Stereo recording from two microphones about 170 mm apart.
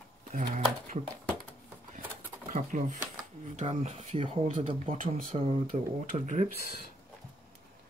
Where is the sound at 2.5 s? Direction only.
50° right (ahead or behind).